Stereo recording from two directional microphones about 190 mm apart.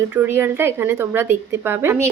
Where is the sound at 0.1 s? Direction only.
10° right (ahead or behind).